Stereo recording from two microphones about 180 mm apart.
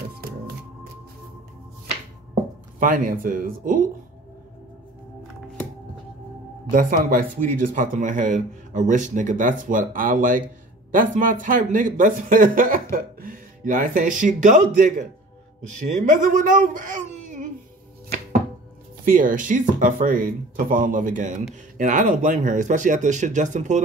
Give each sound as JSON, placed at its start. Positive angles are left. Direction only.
{"t": 2.8, "sound": "speech", "side_deg": -50}
{"t": 6.7, "sound": "speech", "side_deg": -50}
{"t": 19.0, "sound": "speech", "side_deg": -50}